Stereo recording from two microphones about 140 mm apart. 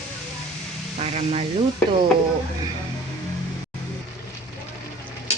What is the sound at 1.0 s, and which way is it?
Speech, 50° right (ahead or behind).